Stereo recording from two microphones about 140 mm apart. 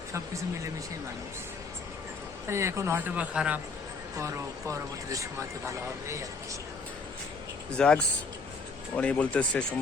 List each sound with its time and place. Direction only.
0.1 s speech: 20° right (ahead or behind)
2.5 s speech: 20° right (ahead or behind)
4.2 s speech: 20° right (ahead or behind)
7.7 s speech: 5° left (ahead or behind)